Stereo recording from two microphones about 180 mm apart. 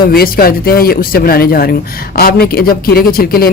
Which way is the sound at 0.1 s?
55° left (ahead or behind).